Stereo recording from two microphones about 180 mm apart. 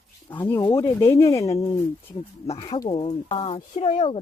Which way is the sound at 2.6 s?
25° left (ahead or behind).